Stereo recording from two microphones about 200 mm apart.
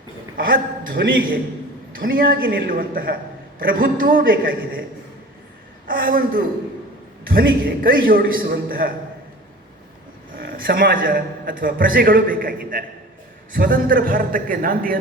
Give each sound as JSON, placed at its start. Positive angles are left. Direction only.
{"t": 0.3, "sound": "a man's voice", "side_deg": -45}
{"t": 5.9, "sound": "a man's voice", "side_deg": -45}
{"t": 10.3, "sound": "a man's voice", "side_deg": -45}